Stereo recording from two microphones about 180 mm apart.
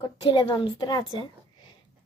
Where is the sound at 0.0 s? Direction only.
25° left (ahead or behind).